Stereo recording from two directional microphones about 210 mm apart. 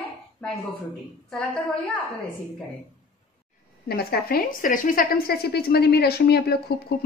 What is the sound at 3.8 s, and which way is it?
A woman's voice, 45° left (ahead or behind).